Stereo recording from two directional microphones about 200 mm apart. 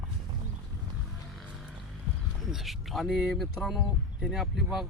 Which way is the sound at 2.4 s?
Centre (ahead or behind).